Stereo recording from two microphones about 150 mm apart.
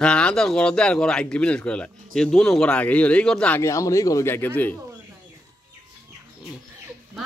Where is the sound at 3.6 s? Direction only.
20° left (ahead or behind).